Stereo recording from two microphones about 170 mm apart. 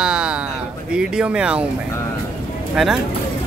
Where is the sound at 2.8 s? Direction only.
5° right (ahead or behind).